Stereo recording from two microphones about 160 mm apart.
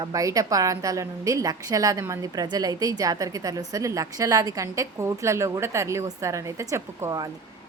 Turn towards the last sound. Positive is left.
turn(degrees=-20)  # may be behind; listen again after turning